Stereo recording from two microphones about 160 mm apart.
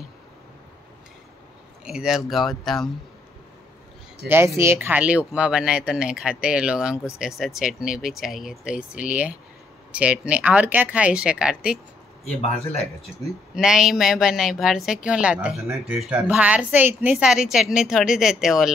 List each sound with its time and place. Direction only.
1.9 s a woman's voice: 5° right (ahead or behind)
4.2 s speech: 90° right
4.6 s a woman's voice: 15° right (ahead or behind)
12.4 s speech: 40° left (ahead or behind)
13.6 s a woman's voice: 5° right (ahead or behind)